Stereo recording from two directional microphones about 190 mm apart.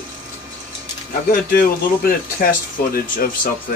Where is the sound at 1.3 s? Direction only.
50° left (ahead or behind).